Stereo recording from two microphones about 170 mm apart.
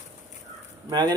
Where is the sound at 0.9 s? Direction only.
25° right (ahead or behind).